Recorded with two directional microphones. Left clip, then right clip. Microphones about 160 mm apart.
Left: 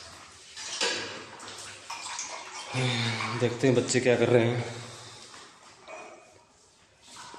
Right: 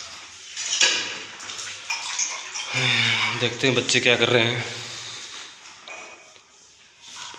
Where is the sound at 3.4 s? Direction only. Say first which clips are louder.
Right 3 dB; 20° left (ahead or behind).